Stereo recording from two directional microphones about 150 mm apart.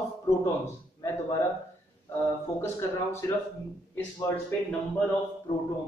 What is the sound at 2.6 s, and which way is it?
Speech, 15° left (ahead or behind).